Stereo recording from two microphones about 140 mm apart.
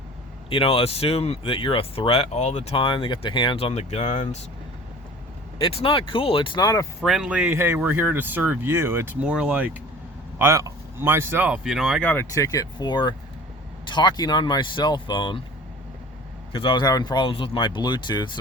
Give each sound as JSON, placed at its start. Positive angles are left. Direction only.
{"t": 0.5, "sound": "speech", "side_deg": 40}
{"t": 5.5, "sound": "speech", "side_deg": 35}
{"t": 7.0, "sound": "speech", "side_deg": -5}
{"t": 12.0, "sound": "speech", "side_deg": 20}
{"t": 16.5, "sound": "speech", "side_deg": 35}